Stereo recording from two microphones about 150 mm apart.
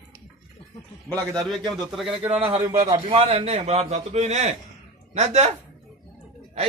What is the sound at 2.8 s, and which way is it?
A man's voice, 40° right (ahead or behind).